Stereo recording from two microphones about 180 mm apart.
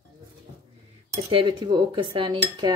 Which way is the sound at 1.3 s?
25° right (ahead or behind).